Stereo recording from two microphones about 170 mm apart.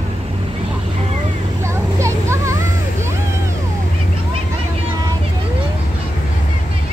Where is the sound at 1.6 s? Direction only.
15° right (ahead or behind).